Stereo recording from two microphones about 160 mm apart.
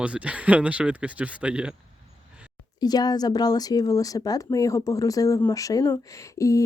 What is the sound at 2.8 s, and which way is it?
A woman's voice, 25° left (ahead or behind).